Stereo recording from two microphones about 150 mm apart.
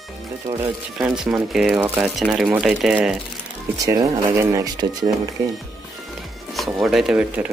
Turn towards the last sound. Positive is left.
turn(degrees=-10)  # may be behind; listen again after turning